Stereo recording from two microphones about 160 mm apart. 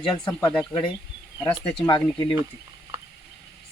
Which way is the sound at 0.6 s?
30° left (ahead or behind).